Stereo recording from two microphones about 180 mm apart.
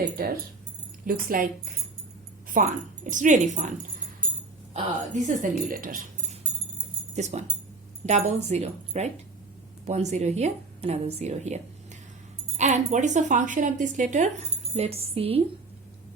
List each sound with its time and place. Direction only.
1.0 s speech: 50° right (ahead or behind)
2.5 s speech: 50° right (ahead or behind)
7.2 s a woman's voice: 40° right (ahead or behind)